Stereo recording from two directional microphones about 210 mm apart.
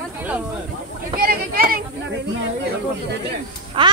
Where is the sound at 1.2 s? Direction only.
45° right (ahead or behind).